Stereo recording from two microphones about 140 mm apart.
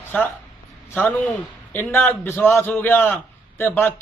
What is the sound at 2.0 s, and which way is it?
A man's voice, 15° left (ahead or behind).